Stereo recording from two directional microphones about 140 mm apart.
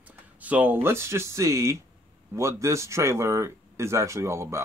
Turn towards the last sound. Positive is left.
turn(degrees=-20)  # may be behind; listen again after turning